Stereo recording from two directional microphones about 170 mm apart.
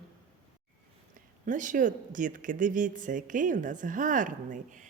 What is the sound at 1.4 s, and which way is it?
A woman's voice, 50° right (ahead or behind).